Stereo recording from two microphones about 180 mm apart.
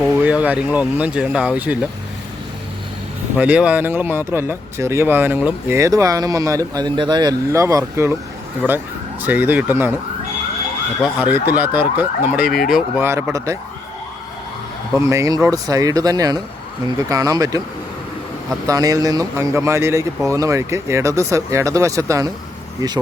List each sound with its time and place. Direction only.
0.1 s speech: 10° right (ahead or behind)
3.3 s speech: 5° right (ahead or behind)
11.0 s speech: 10° right (ahead or behind)
13.0 s speech: 15° right (ahead or behind)
14.9 s speech: 15° right (ahead or behind)
18.6 s speech: 20° right (ahead or behind)